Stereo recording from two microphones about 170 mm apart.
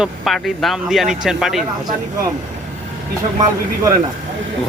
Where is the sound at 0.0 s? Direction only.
Centre (ahead or behind).